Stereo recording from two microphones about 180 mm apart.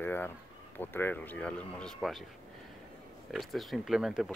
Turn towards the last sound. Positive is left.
turn(degrees=-5)  # may be behind; listen again after turning